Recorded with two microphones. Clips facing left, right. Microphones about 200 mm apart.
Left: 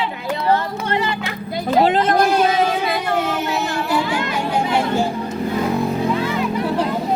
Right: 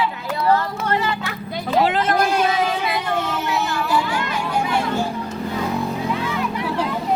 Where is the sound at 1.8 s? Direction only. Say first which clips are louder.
Left 4 dB; 20° left (ahead or behind).